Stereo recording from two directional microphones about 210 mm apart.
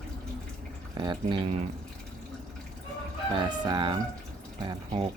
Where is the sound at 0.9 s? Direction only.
20° right (ahead or behind).